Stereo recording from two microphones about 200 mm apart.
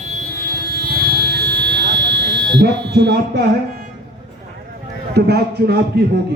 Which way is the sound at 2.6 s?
55° right (ahead or behind).